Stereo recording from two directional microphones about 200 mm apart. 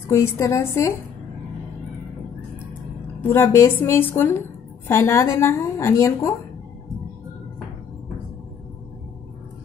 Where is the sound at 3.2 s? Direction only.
10° left (ahead or behind).